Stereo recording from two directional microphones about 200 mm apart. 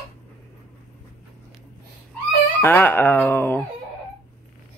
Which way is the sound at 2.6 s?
10° left (ahead or behind).